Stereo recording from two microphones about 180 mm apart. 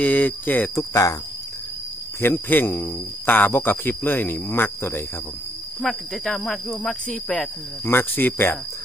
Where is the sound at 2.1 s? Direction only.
10° left (ahead or behind).